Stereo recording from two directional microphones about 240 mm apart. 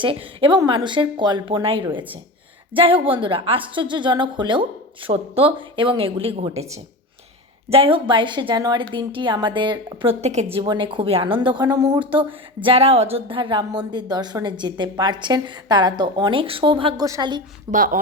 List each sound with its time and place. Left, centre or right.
0.0 s a woman's voice: right
17.7 s speech: right